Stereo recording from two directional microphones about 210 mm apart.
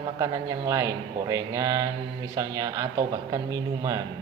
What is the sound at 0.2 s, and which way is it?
A man's voice, 15° right (ahead or behind).